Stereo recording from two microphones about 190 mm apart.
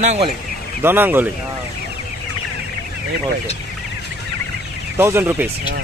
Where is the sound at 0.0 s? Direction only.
35° right (ahead or behind).